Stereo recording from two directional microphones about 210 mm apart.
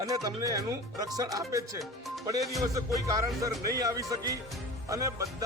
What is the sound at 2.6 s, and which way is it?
Speech, 15° right (ahead or behind).